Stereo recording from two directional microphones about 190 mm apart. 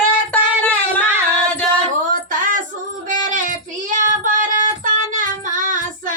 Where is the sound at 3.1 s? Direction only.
45° right (ahead or behind).